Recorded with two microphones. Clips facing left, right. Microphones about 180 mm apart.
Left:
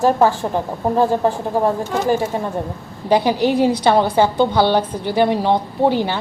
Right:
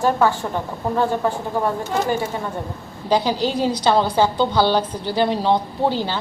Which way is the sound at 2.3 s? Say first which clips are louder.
Left 4 dB; 35° left (ahead or behind).